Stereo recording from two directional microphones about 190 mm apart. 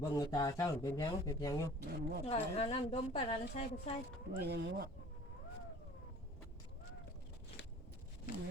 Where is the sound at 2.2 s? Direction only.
30° left (ahead or behind).